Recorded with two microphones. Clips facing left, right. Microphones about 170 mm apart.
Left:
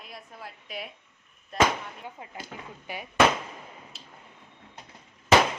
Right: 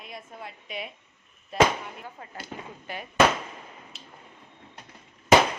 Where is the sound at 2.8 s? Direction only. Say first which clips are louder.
Even; 10° left (ahead or behind).